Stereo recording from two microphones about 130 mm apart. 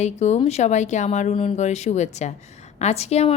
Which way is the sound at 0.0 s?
60° left (ahead or behind).